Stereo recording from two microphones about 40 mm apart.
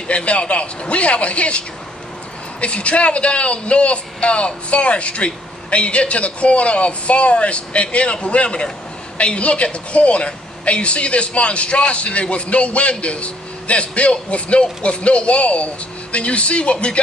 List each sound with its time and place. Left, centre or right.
0.1 s a man's voice: left
2.6 s a man's voice: left